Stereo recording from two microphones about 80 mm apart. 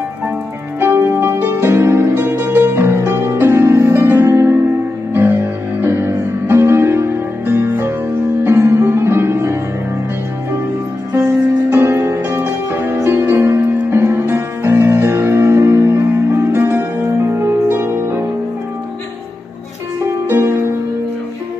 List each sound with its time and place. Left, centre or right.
0.7 s music: right
11.7 s music: right
20.2 s music: right